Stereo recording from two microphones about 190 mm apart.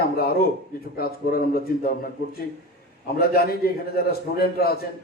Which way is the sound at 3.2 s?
55° left (ahead or behind).